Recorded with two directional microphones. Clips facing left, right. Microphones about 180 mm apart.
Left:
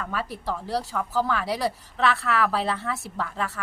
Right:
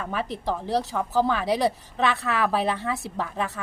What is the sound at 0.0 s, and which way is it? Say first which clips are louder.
A woman's voice: right 2 dB; 20° right (ahead or behind).